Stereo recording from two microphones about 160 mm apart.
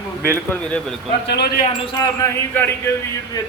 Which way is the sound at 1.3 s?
90° left.